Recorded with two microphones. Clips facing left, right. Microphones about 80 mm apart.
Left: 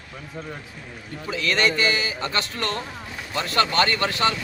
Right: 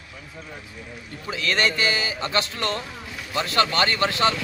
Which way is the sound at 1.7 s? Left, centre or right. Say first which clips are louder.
Left 1 dB; right.